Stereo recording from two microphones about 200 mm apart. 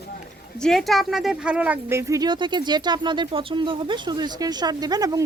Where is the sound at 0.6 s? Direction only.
Centre (ahead or behind).